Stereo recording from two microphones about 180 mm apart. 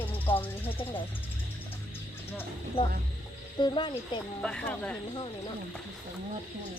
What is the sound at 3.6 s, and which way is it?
Speech, 25° left (ahead or behind).